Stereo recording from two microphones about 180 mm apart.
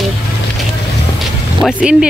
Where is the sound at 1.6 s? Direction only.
5° right (ahead or behind).